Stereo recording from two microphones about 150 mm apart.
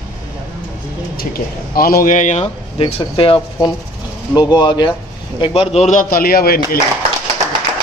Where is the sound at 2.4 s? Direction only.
35° left (ahead or behind); by 6.8 s 90° left.